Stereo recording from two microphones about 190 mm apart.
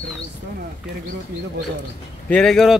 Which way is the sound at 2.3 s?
5° left (ahead or behind).